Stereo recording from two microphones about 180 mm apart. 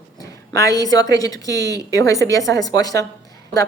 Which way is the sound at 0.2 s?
20° left (ahead or behind).